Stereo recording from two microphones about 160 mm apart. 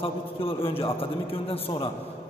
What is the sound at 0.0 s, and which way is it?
A man's voice, 35° left (ahead or behind).